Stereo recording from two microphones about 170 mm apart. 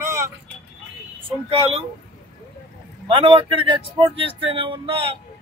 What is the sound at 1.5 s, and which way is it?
Speech, 35° right (ahead or behind).